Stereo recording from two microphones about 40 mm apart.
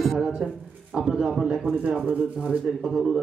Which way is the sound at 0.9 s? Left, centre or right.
Right.